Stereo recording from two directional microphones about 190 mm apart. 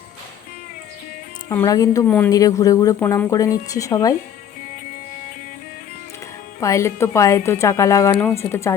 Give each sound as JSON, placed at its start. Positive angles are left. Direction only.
{"t": 1.5, "sound": "a woman's voice", "side_deg": 15}
{"t": 6.6, "sound": "a woman's voice", "side_deg": 15}